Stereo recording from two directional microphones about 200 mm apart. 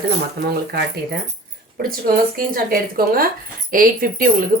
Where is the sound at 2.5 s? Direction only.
45° right (ahead or behind).